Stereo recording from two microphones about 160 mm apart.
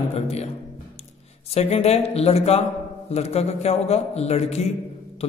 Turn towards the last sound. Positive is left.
turn(degrees=40)  # may be behind; listen again after turning